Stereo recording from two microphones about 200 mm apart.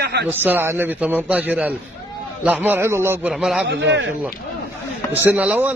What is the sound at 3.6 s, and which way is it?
Speech, 60° right (ahead or behind).